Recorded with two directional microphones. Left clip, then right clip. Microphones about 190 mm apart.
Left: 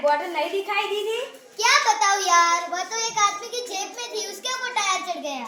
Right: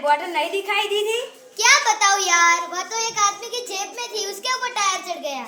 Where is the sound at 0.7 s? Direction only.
5° left (ahead or behind).